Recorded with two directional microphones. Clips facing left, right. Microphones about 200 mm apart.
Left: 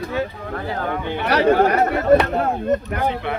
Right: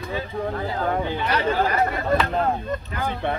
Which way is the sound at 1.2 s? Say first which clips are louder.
Left 7 dB; 70° left (ahead or behind).